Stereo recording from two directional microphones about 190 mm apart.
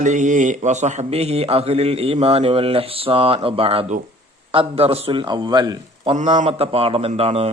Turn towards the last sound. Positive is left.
turn(degrees=-35)  # may be behind; listen again after turning